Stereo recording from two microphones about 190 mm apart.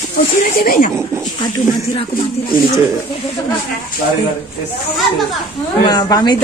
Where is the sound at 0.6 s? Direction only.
50° left (ahead or behind).